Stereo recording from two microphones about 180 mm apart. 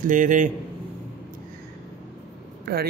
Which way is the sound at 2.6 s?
55° right (ahead or behind).